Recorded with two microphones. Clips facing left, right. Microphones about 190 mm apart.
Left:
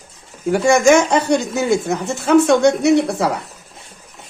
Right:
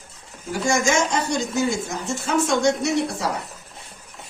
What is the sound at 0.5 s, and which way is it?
Speech, 60° left (ahead or behind).